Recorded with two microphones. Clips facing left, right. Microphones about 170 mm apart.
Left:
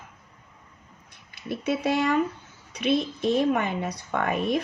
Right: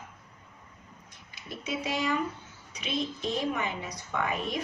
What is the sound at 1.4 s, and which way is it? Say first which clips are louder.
A woman's voice: left 8 dB; 60° left (ahead or behind).